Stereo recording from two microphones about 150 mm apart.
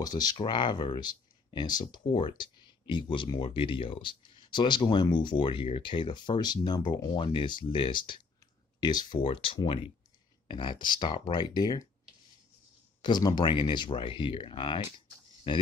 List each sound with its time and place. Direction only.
0.0 s speech: 25° left (ahead or behind)
13.0 s speech: 30° left (ahead or behind)